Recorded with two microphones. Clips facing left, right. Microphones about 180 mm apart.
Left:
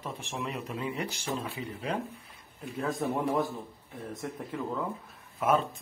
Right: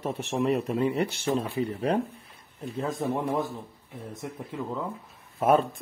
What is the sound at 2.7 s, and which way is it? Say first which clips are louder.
Speech: right 2 dB; 20° right (ahead or behind).